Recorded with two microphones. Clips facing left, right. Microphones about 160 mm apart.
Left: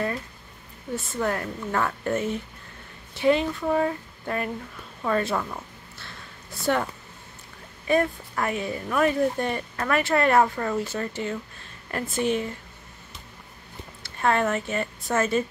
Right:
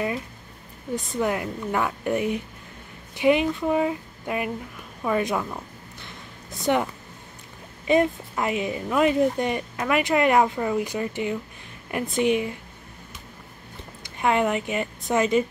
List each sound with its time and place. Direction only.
0.9 s speech: 15° right (ahead or behind)
14.0 s speech: 15° right (ahead or behind)